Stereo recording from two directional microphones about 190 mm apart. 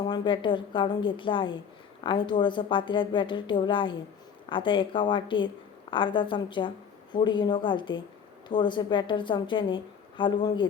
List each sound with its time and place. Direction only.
0.0 s a woman's voice: 25° left (ahead or behind)